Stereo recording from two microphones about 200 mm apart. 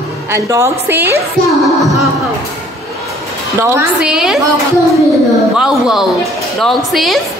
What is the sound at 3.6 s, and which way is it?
Speech, 10° right (ahead or behind).